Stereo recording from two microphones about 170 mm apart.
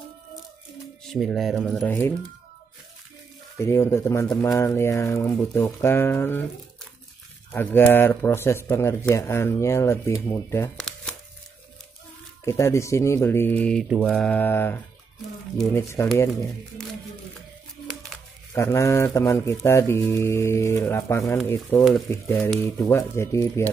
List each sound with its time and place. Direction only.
1.0 s speech: centre (ahead or behind)
3.5 s speech: 15° left (ahead or behind)
7.5 s speech: 10° left (ahead or behind)
10.8 s a sound: 5° left (ahead or behind)
12.4 s speech: 15° left (ahead or behind)
16.0 s speech: 15° left (ahead or behind)
18.5 s speech: 15° left (ahead or behind)